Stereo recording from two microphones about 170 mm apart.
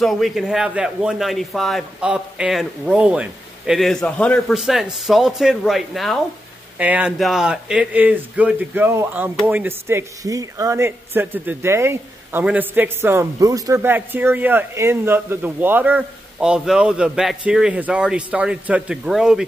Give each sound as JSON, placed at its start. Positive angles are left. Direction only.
{"t": 0.0, "sound": "a man's voice", "side_deg": 0}